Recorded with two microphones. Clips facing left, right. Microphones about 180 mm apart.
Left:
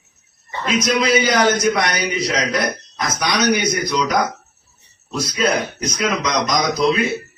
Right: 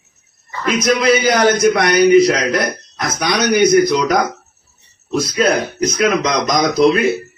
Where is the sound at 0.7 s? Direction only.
60° right (ahead or behind).